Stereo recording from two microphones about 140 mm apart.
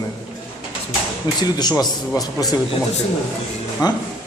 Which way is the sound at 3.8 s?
30° left (ahead or behind).